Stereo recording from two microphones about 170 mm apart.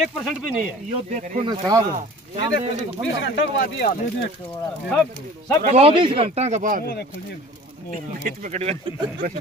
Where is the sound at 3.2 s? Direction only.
90° left.